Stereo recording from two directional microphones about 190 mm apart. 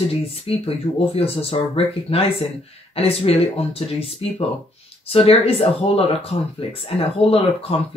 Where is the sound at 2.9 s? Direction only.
30° left (ahead or behind).